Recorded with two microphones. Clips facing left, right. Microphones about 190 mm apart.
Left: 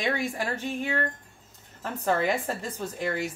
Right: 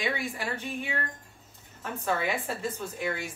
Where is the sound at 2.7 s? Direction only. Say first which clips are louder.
Left 3 dB; 40° left (ahead or behind).